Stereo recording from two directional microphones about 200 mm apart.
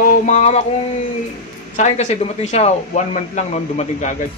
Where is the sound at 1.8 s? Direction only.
35° left (ahead or behind).